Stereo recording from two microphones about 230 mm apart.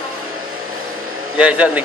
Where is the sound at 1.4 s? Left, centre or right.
Centre.